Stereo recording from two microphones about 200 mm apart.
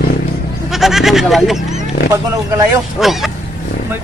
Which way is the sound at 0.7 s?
Centre (ahead or behind).